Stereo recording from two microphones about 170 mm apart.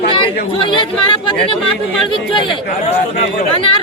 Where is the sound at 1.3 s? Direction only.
30° left (ahead or behind).